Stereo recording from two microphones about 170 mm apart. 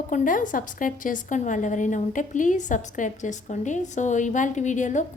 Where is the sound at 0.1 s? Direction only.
50° left (ahead or behind).